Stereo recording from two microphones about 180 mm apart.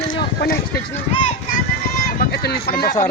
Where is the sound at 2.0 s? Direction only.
60° left (ahead or behind).